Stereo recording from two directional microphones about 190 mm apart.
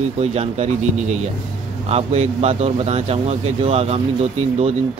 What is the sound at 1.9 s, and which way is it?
Speech, 35° right (ahead or behind).